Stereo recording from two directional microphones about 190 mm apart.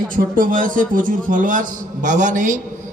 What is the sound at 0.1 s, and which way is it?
A man's voice, 45° right (ahead or behind).